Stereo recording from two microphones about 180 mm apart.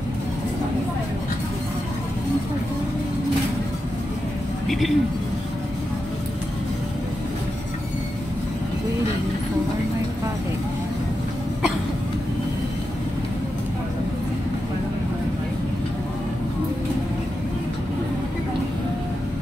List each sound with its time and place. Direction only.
4.6 s a man's voice: centre (ahead or behind)